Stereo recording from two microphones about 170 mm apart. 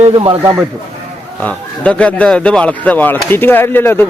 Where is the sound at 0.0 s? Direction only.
30° right (ahead or behind).